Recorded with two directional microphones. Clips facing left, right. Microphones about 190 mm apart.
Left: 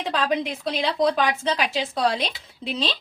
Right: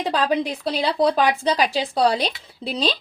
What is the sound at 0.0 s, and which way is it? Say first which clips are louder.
Speech: right 3 dB; 35° right (ahead or behind).